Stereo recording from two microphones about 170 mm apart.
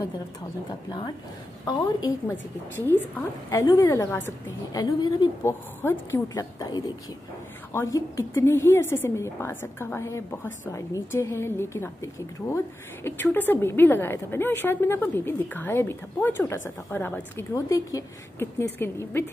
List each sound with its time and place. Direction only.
1.7 s a woman's voice: 25° left (ahead or behind)
2.9 s a woman's voice: 15° left (ahead or behind)
5.5 s a woman's voice: 15° left (ahead or behind)